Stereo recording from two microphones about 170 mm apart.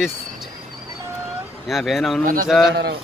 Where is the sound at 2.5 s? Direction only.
Centre (ahead or behind).